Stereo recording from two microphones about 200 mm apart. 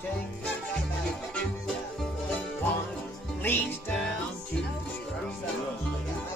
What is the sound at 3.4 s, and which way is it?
Music, 10° left (ahead or behind).